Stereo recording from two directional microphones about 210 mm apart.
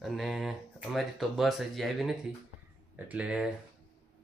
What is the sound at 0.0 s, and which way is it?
Speech, centre (ahead or behind).